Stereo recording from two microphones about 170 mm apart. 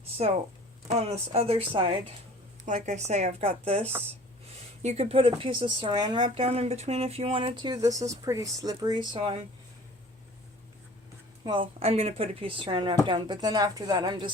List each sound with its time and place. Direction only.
0.9 s speech: 40° right (ahead or behind)
2.6 s a woman's voice: 45° right (ahead or behind)
11.4 s a woman's voice: 30° right (ahead or behind)